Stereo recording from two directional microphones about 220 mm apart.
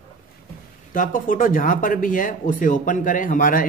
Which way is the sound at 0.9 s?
35° left (ahead or behind).